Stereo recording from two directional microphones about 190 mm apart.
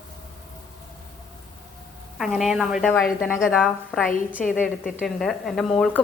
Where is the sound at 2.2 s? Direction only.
Centre (ahead or behind).